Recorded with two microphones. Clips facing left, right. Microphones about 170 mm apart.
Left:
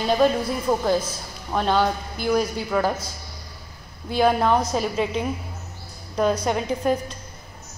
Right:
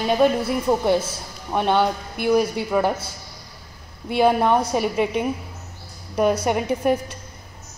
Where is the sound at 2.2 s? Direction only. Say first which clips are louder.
Right 3 dB; 65° right (ahead or behind).